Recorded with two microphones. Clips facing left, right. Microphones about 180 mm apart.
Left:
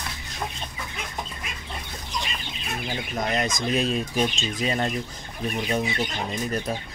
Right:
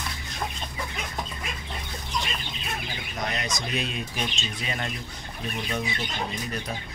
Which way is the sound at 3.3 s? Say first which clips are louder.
Left 8 dB; 45° left (ahead or behind).